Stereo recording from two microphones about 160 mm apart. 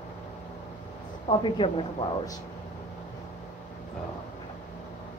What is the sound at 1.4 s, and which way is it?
Speech, 35° left (ahead or behind).